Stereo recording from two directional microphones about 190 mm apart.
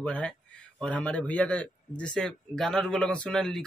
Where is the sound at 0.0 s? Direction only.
5° left (ahead or behind).